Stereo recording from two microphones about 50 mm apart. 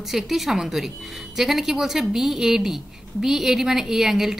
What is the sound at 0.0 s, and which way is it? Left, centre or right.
A woman's voice, centre.